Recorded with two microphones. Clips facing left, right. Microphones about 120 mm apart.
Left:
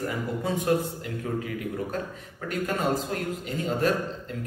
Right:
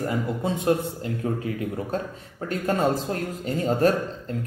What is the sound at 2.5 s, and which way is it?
A man's voice, 35° right (ahead or behind).